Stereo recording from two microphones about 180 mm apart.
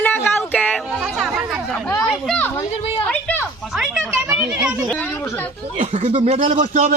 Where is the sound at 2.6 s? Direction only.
35° left (ahead or behind).